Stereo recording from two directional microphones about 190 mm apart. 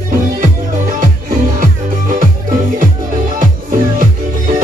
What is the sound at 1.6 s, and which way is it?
Music, 45° right (ahead or behind).